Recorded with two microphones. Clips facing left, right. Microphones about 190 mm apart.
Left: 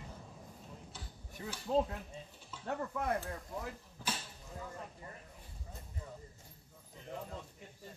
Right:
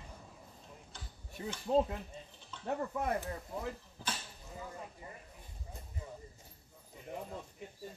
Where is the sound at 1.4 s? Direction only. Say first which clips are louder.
Right 2 dB; centre (ahead or behind).